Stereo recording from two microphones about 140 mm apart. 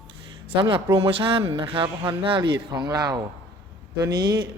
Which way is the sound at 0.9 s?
40° right (ahead or behind).